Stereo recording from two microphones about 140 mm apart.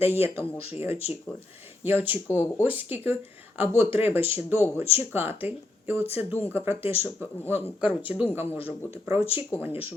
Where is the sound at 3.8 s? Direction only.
45° left (ahead or behind).